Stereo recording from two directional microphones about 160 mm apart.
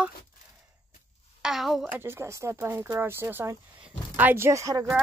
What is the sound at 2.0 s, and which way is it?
Speech, 15° right (ahead or behind).